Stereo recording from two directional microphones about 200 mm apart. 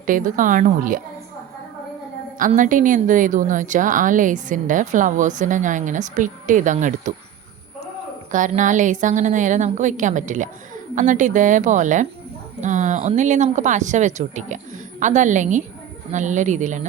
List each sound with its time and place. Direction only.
0.0 s a woman's voice: 40° right (ahead or behind)
2.4 s a woman's voice: 40° right (ahead or behind)
8.3 s a woman's voice: 40° right (ahead or behind)